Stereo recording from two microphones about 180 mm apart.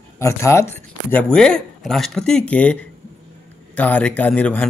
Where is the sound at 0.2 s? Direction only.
15° left (ahead or behind).